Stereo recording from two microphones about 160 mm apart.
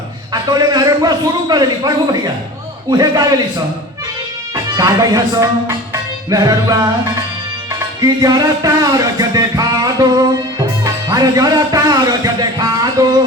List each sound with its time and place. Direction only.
0.5 s music: 25° right (ahead or behind)
4.5 s music: 25° right (ahead or behind)
8.0 s music: 25° right (ahead or behind)